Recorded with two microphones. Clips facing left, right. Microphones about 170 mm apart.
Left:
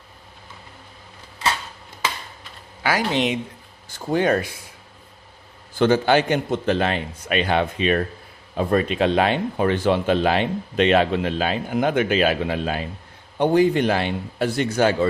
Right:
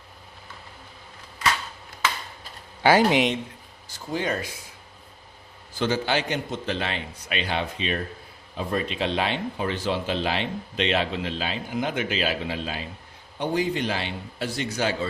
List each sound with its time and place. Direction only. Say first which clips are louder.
2.4 s a sound: right 5 dB; 30° right (ahead or behind)
3.8 s a man's voice: left 8 dB; 60° left (ahead or behind)
5.8 s a man's voice: left 8 dB; 55° left (ahead or behind)